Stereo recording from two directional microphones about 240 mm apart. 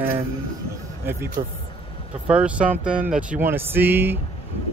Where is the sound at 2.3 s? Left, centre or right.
Centre.